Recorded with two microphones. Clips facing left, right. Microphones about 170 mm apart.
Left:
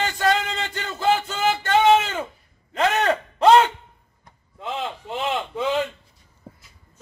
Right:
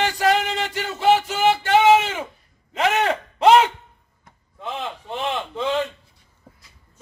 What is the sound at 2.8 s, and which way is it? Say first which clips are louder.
Speech: even; 15° right (ahead or behind).